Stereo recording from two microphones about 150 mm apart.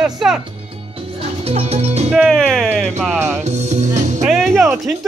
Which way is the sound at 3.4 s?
50° right (ahead or behind).